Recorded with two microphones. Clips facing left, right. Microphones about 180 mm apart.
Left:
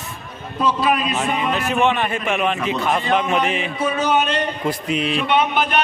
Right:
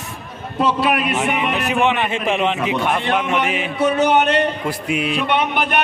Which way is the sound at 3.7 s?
70° right (ahead or behind).